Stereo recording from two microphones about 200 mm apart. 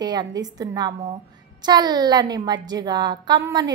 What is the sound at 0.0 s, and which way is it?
A woman's voice, 20° right (ahead or behind).